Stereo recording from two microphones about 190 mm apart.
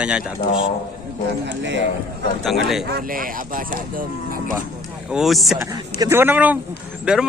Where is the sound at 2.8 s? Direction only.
50° right (ahead or behind).